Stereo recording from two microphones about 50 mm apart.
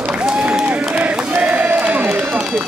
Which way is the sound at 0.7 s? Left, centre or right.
Right.